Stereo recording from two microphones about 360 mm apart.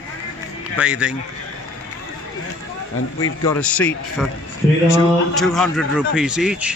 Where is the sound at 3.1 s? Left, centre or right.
Left.